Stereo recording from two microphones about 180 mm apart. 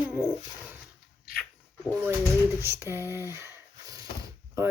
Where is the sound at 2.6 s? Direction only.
15° right (ahead or behind).